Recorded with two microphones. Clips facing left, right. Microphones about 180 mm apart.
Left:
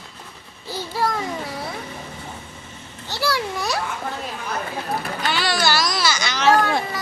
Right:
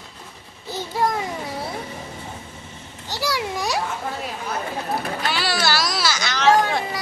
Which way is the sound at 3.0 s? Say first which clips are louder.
Left 1 dB; 15° right (ahead or behind).